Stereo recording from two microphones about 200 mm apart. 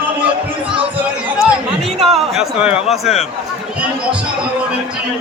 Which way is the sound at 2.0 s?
5° right (ahead or behind).